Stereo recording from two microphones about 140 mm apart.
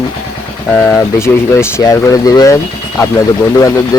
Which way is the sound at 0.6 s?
10° left (ahead or behind).